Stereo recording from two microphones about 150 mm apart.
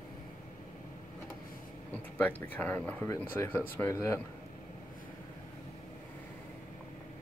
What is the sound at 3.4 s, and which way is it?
Speech, 15° left (ahead or behind).